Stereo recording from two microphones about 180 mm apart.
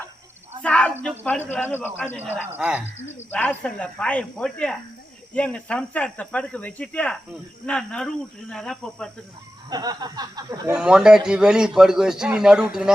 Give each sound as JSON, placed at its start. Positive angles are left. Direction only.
{"t": 0.6, "sound": "speech", "side_deg": 5}
{"t": 2.5, "sound": "speech", "side_deg": -10}
{"t": 3.2, "sound": "a man's voice", "side_deg": 10}
{"t": 9.6, "sound": "a sound", "side_deg": -20}
{"t": 10.8, "sound": "a man's voice", "side_deg": -5}